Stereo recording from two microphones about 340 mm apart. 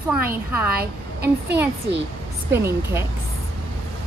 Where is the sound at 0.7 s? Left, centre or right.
Right.